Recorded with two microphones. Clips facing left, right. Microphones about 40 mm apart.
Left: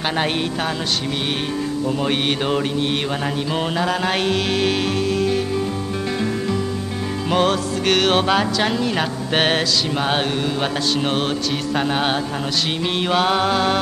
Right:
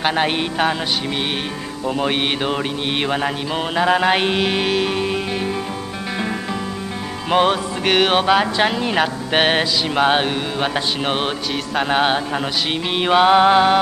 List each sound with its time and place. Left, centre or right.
0.0 s music: centre
1.9 s music: centre
5.0 s music: right
8.5 s music: right